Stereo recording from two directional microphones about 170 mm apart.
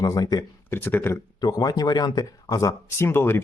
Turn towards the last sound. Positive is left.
turn(degrees=15)  # may be behind; listen again after turning